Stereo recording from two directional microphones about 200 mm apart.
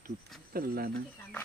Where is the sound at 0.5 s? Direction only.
50° right (ahead or behind).